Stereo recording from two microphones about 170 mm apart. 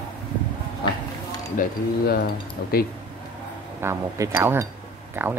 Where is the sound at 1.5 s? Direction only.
55° left (ahead or behind).